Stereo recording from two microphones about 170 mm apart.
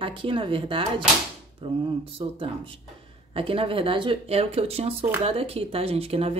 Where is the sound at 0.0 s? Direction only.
30° right (ahead or behind).